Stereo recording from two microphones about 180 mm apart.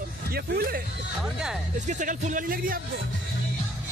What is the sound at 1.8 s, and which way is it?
Speech, 45° right (ahead or behind).